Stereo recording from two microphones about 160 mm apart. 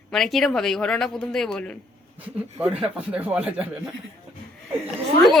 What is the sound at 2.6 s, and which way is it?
Speech, 5° right (ahead or behind).